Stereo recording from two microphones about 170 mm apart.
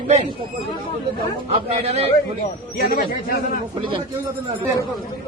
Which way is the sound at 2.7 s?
60° left (ahead or behind).